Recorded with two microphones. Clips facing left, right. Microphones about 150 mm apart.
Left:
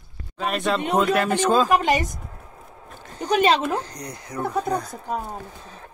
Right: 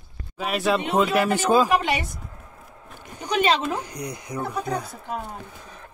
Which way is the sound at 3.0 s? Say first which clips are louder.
Left 5 dB; 15° right (ahead or behind).